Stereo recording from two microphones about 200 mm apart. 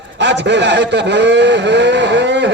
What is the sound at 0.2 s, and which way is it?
A man's voice, 60° right (ahead or behind).